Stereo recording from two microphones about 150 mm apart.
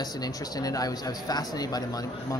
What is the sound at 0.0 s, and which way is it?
Speech, 25° left (ahead or behind).